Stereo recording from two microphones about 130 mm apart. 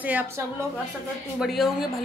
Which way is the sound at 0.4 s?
15° right (ahead or behind).